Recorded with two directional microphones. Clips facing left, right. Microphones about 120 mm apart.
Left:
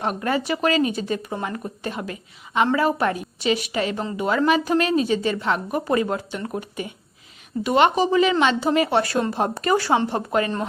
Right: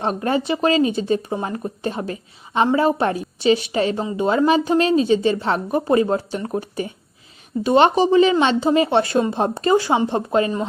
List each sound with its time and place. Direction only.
0.0 s a woman's voice: 30° right (ahead or behind)